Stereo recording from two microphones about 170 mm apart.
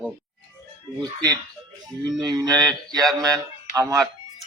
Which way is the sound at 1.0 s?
20° right (ahead or behind).